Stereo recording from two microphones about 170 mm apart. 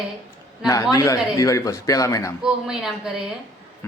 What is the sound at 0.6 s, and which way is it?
Speech, 20° left (ahead or behind).